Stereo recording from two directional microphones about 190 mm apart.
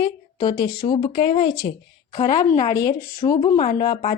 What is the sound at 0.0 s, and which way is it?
Speech, 20° left (ahead or behind).